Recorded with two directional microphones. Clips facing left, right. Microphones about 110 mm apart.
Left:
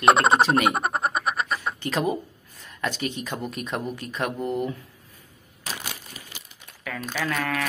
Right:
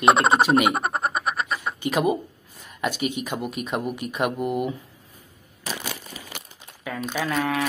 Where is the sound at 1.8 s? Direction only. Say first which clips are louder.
Right 5 dB; 15° right (ahead or behind).